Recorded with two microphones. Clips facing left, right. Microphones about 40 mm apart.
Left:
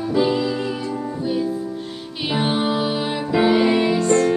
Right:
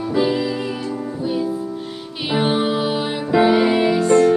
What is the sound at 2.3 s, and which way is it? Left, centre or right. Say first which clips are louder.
Music: right 2 dB; centre.